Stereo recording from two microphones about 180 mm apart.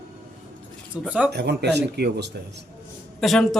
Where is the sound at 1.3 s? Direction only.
65° right (ahead or behind).